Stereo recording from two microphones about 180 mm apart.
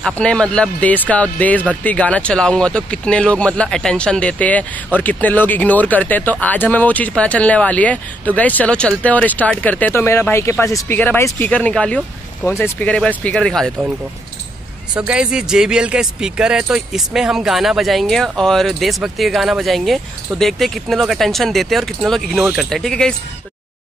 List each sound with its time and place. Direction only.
0.0 s a man's voice: 5° left (ahead or behind)
15.0 s a man's voice: 5° right (ahead or behind)